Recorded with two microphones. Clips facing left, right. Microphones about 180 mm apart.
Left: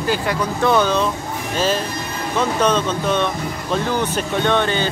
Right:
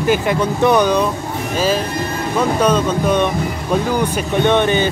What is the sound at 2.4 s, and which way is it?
Speech, 10° right (ahead or behind).